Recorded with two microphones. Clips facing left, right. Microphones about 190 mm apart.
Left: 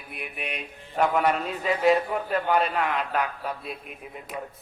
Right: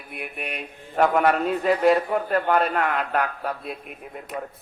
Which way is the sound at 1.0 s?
50° right (ahead or behind).